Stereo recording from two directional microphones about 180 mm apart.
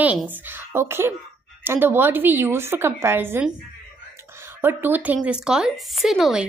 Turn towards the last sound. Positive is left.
turn(degrees=0)  # may be behind; listen again after turning